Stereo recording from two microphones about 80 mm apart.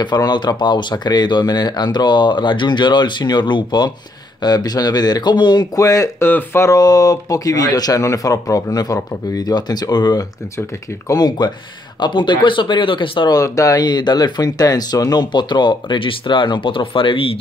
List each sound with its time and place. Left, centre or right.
0.0 s speech: left
4.4 s speech: left
5.8 s speech: left
6.2 s speech: left
6.6 s speech: left
12.0 s speech: left
13.3 s speech: left
13.8 s speech: left